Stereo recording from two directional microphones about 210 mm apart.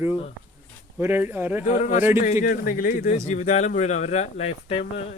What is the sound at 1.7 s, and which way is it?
Speech, 35° left (ahead or behind).